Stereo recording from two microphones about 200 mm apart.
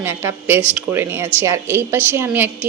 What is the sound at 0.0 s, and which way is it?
A woman's voice, 10° right (ahead or behind).